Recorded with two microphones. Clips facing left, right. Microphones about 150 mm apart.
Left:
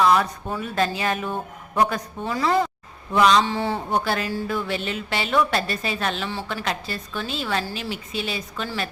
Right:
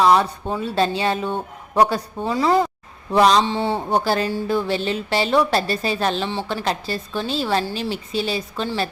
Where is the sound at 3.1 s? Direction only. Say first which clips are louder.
Right 2 dB; 35° right (ahead or behind).